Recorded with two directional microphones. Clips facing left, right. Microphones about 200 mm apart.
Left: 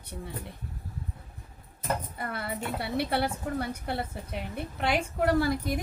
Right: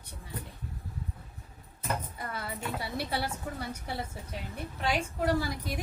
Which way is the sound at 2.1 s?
60° left (ahead or behind).